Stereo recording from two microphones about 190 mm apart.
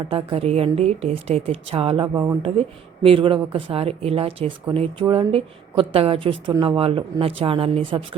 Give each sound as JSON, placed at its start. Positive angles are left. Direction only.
{"t": 0.0, "sound": "speech", "side_deg": -30}